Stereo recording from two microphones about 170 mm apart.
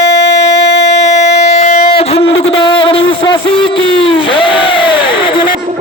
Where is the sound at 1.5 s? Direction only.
40° left (ahead or behind).